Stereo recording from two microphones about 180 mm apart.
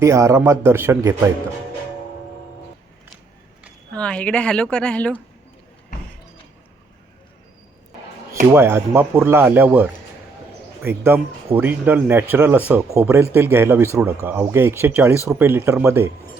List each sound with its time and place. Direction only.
0.0 s speech: 15° right (ahead or behind)
3.9 s a woman's voice: 5° left (ahead or behind)
8.5 s speech: 15° right (ahead or behind)